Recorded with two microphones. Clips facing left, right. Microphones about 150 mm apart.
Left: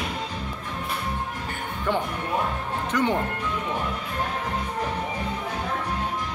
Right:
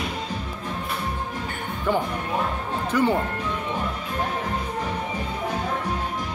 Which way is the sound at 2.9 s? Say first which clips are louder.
Right 3 dB; 10° right (ahead or behind).